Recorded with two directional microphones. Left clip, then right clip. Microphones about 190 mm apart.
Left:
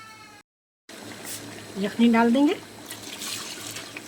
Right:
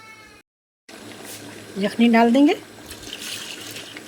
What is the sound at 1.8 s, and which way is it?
Speech, 20° right (ahead or behind).